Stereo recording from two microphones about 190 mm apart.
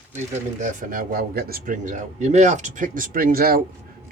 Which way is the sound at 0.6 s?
45° right (ahead or behind).